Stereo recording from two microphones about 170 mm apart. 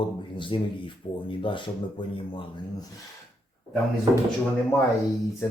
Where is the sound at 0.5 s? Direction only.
30° left (ahead or behind).